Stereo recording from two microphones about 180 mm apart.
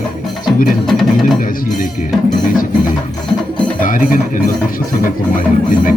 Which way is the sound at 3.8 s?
50° left (ahead or behind).